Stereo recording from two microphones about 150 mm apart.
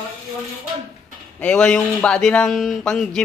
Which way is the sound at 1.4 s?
5° left (ahead or behind).